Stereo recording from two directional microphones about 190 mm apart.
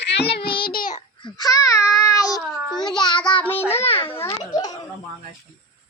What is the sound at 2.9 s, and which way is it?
Child singing, 25° left (ahead or behind).